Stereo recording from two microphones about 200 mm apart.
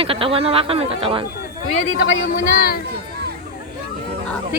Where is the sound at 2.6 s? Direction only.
45° left (ahead or behind).